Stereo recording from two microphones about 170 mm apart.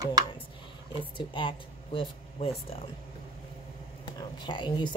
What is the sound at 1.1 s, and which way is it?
Speech, 30° left (ahead or behind).